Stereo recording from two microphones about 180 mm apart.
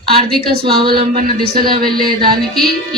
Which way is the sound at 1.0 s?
45° right (ahead or behind).